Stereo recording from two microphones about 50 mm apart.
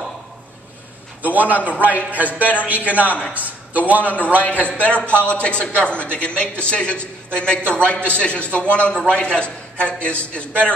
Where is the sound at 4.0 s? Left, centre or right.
Left.